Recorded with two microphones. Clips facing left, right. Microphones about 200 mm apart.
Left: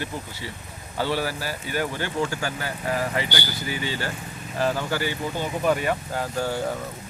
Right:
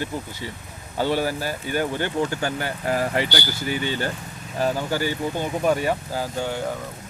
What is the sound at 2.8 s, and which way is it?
Speech, 35° right (ahead or behind).